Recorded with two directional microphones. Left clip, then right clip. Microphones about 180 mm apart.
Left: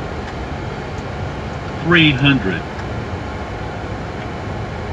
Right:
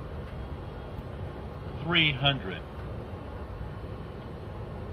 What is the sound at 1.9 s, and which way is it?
Speech, 40° right (ahead or behind).